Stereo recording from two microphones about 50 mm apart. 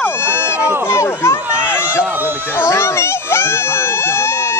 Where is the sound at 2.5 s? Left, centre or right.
Left.